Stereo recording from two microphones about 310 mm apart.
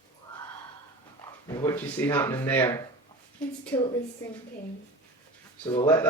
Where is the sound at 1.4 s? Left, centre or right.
Centre.